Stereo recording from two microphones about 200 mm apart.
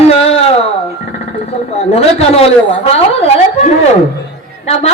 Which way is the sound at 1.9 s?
30° left (ahead or behind).